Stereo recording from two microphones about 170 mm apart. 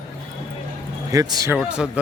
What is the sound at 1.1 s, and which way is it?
Speech, 20° right (ahead or behind).